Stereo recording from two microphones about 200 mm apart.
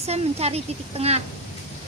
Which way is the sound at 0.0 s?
30° right (ahead or behind).